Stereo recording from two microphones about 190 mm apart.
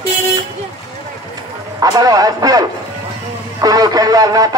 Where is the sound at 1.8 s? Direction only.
20° right (ahead or behind).